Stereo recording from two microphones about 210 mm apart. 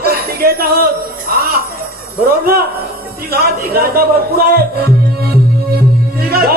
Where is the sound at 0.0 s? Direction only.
45° right (ahead or behind).